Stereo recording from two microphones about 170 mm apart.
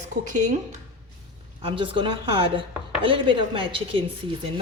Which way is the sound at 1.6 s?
30° right (ahead or behind).